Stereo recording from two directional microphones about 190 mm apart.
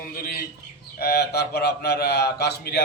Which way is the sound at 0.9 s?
60° left (ahead or behind).